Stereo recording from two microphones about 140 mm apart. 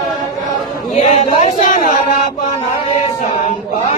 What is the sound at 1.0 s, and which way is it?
Chatter, 50° left (ahead or behind).